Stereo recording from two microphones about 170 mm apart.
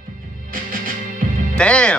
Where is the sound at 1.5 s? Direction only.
5° left (ahead or behind).